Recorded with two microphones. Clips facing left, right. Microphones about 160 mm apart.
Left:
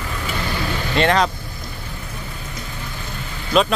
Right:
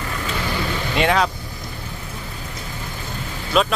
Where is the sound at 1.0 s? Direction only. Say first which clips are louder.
Left 2 dB; 5° right (ahead or behind).